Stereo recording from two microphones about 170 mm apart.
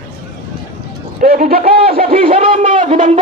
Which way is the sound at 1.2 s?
65° right (ahead or behind).